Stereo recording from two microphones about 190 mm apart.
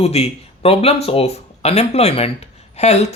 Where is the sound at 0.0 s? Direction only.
35° left (ahead or behind).